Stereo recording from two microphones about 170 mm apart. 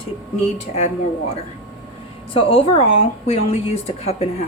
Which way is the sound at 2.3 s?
35° left (ahead or behind).